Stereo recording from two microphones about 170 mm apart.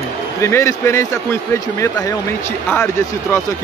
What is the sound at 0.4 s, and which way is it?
Speech, 15° left (ahead or behind).